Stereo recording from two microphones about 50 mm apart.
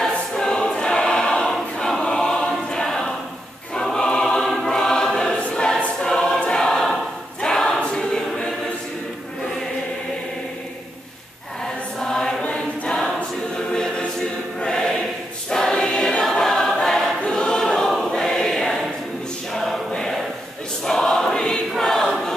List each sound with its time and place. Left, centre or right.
0.3 s choir: centre
11.6 s choir: centre
14.6 s choir: centre